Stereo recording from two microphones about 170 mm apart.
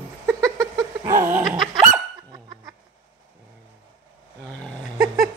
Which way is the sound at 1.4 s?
5° right (ahead or behind).